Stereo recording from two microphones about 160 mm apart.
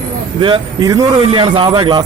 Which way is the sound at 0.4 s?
25° right (ahead or behind).